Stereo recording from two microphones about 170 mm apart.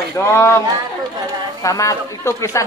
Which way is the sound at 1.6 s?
20° left (ahead or behind).